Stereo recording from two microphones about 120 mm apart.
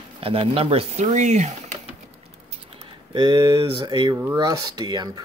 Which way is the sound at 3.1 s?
40° right (ahead or behind).